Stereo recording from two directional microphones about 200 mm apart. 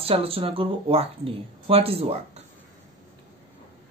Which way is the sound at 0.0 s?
30° right (ahead or behind).